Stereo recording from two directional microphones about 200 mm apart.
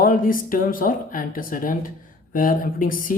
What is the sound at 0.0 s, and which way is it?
Speech, 45° left (ahead or behind).